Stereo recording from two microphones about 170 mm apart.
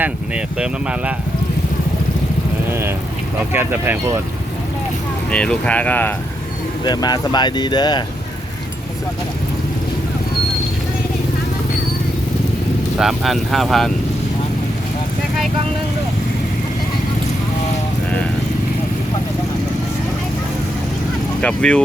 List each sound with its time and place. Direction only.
0.0 s speech: 5° right (ahead or behind)
3.5 s speech: 10° right (ahead or behind)
5.3 s speech: 5° left (ahead or behind)
6.8 s speech: 25° left (ahead or behind)
13.0 s speech: centre (ahead or behind)
21.4 s speech: 5° left (ahead or behind)